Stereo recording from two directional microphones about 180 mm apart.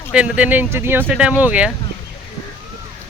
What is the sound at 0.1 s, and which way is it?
Speech, 5° right (ahead or behind).